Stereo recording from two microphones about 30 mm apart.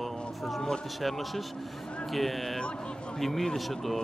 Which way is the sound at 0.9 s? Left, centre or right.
Centre.